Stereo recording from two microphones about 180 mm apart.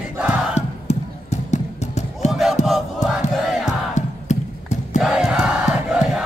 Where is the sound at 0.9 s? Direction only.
40° left (ahead or behind).